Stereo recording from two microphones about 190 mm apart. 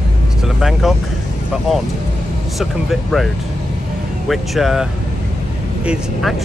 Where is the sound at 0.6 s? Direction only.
Centre (ahead or behind).